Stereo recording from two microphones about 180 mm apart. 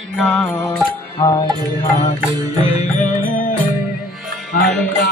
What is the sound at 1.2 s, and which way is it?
Music, 25° left (ahead or behind).